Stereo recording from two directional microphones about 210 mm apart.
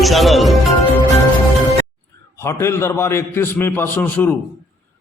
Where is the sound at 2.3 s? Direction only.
10° left (ahead or behind).